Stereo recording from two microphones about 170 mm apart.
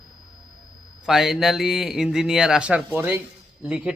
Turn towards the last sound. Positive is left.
turn(degrees=-5)  # may be behind; listen again after turning